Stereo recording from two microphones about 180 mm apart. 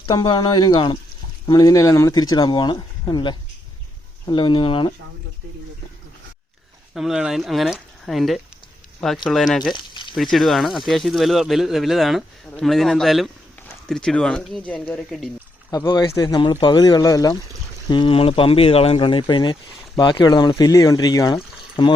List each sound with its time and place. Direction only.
0.0 s speech: 25° left (ahead or behind)
6.9 s speech: 5° right (ahead or behind)
9.7 s frying: 25° left (ahead or behind)
10.3 s speech: centre (ahead or behind)
15.7 s speech: 20° left (ahead or behind)